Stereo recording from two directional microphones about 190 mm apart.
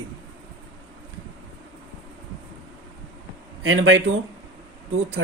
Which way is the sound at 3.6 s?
90° right.